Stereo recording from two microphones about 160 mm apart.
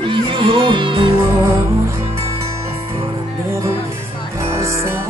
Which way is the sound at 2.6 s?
35° right (ahead or behind).